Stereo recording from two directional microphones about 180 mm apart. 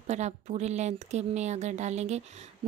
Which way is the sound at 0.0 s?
40° right (ahead or behind).